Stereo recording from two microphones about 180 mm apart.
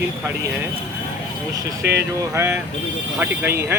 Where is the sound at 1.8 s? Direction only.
65° right (ahead or behind).